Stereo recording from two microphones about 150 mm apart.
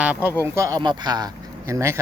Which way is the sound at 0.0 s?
10° right (ahead or behind).